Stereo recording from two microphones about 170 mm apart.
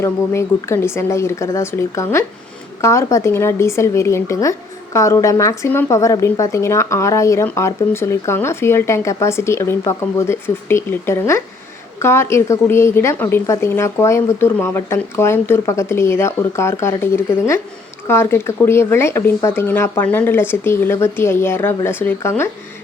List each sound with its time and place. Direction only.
0.0 s a woman's voice: 15° left (ahead or behind)